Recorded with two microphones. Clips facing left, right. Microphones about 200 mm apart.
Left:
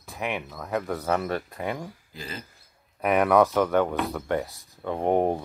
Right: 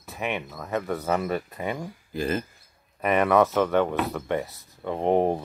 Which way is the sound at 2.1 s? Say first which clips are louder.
Right 13 dB; 55° right (ahead or behind).